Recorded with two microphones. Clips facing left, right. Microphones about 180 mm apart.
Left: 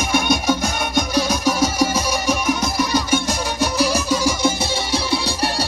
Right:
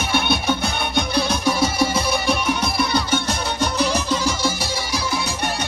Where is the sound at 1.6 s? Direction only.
40° left (ahead or behind).